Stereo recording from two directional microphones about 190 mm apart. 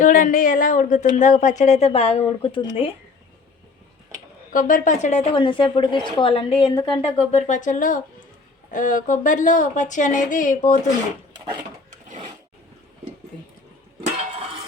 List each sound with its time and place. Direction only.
0.0 s a woman's voice: 45° left (ahead or behind); by 2.9 s 30° left (ahead or behind)
4.5 s a woman's voice: 45° left (ahead or behind)
5.3 s a woman's voice: 25° left (ahead or behind); by 10.8 s 45° left (ahead or behind)
13.3 s a sound: 5° left (ahead or behind)